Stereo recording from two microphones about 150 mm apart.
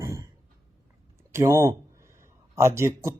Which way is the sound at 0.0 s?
20° right (ahead or behind).